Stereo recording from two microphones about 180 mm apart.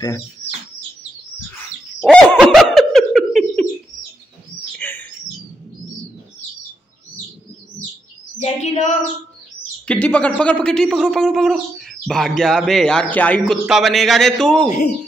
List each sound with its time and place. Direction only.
2.0 s a sound: centre (ahead or behind)
4.7 s bird: 10° left (ahead or behind)
8.4 s chirp: 40° left (ahead or behind)
9.8 s speech: 10° left (ahead or behind)